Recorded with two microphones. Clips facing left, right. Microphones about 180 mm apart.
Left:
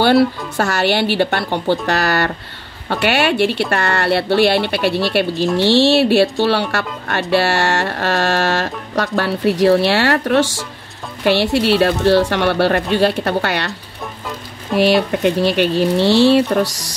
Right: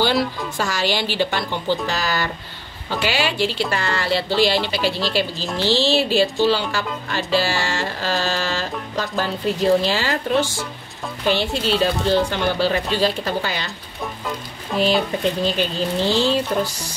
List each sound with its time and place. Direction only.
0.6 s speech: 65° left (ahead or behind)
14.8 s speech: 75° left (ahead or behind)